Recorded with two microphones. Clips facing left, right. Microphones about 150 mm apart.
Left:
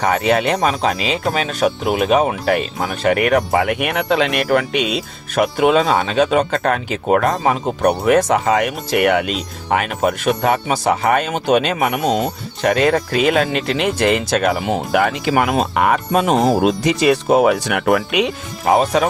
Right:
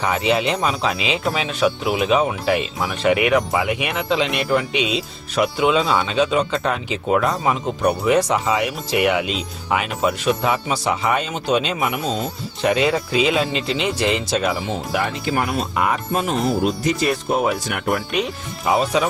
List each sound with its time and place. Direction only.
0.0 s speech: 50° left (ahead or behind)
12.6 s speech: 50° left (ahead or behind)
14.9 s speech: 70° left (ahead or behind)
18.6 s speech: 50° left (ahead or behind)